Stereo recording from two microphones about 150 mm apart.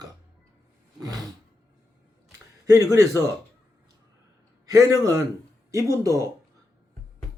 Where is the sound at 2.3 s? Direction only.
20° right (ahead or behind).